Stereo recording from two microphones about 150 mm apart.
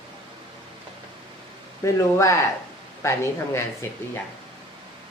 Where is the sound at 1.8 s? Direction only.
20° left (ahead or behind).